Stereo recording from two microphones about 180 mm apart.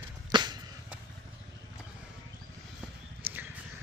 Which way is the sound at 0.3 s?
25° right (ahead or behind).